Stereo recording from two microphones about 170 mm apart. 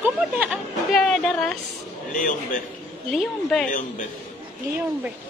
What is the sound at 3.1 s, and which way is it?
Speech, 5° left (ahead or behind).